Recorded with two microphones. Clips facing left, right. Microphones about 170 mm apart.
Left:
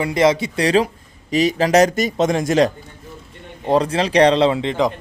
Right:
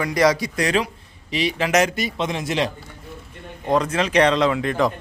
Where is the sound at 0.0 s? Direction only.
25° left (ahead or behind); by 2.7 s 45° left (ahead or behind).